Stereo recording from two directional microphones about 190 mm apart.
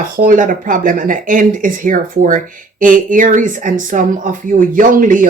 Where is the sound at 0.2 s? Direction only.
45° right (ahead or behind).